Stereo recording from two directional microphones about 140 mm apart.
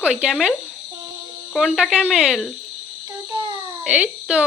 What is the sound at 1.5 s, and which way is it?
Speech, 5° right (ahead or behind).